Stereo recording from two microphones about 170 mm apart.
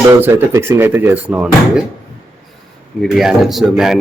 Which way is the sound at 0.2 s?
15° right (ahead or behind).